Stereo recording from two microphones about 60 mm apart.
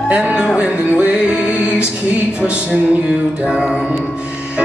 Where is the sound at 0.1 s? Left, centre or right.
Right.